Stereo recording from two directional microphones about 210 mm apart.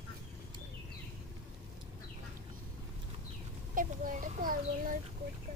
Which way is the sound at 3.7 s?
40° right (ahead or behind).